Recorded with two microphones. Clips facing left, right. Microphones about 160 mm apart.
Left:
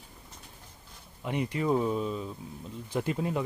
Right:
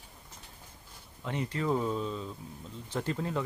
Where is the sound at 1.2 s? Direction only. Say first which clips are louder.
Left 3 dB; 15° left (ahead or behind).